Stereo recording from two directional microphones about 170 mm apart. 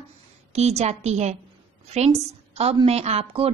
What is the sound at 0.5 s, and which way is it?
A woman's voice, 40° right (ahead or behind).